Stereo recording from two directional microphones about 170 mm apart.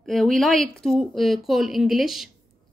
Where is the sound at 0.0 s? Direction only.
Centre (ahead or behind).